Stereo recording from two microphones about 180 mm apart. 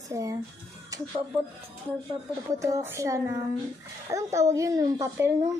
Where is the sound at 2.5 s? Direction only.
15° right (ahead or behind).